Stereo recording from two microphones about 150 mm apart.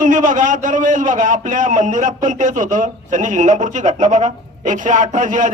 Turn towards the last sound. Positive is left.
turn(degrees=-60)  # may be behind; listen again after turning